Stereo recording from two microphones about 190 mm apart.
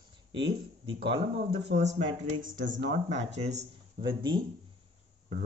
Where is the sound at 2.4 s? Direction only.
45° right (ahead or behind).